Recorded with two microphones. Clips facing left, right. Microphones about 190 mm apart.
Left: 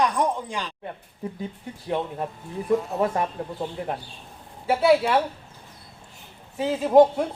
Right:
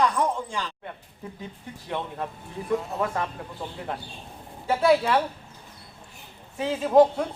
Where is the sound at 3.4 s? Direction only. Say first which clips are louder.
Left 7 dB; 35° left (ahead or behind).